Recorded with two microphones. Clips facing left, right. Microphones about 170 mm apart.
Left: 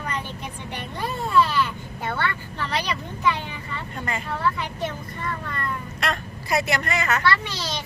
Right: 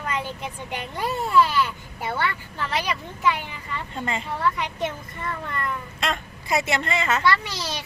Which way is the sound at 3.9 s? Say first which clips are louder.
Right 1 dB; 20° right (ahead or behind).